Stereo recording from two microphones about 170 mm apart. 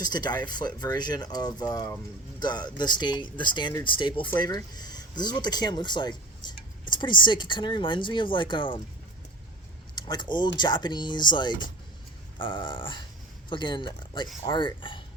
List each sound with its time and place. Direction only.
0.0 s speech: 25° left (ahead or behind)
9.9 s speech: 25° left (ahead or behind)